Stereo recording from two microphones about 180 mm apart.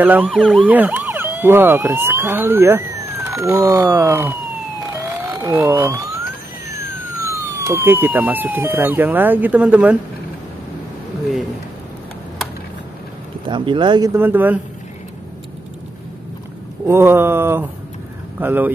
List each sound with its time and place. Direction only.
0.0 s speech: 10° right (ahead or behind)
4.9 s police car: 15° right (ahead or behind)
6.7 s speech: 15° right (ahead or behind)
13.5 s speech: 25° right (ahead or behind)
14.1 s speech: 10° right (ahead or behind)
16.8 s speech: 15° right (ahead or behind)